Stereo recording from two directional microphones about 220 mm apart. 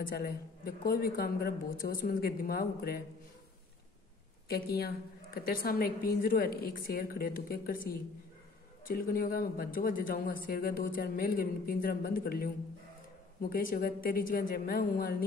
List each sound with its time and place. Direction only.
0.0 s speech: 45° left (ahead or behind)
4.5 s speech: 45° left (ahead or behind)
8.8 s speech: 40° left (ahead or behind)